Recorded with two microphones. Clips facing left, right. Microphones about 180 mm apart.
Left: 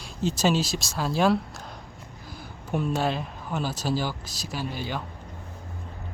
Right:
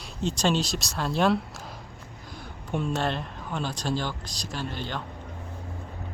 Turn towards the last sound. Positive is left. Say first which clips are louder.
# left 2 dB
turn(degrees=10)  # may be behind; listen again after turning